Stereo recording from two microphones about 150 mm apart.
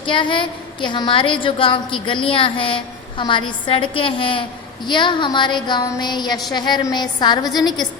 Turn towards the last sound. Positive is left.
turn(degrees=25)  # may be behind; listen again after turning